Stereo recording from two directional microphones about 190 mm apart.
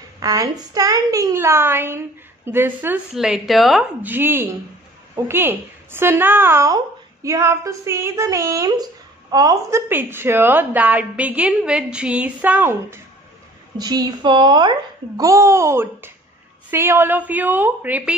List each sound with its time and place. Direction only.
0.2 s a woman's voice: 20° right (ahead or behind)
13.7 s a woman's voice: 20° right (ahead or behind)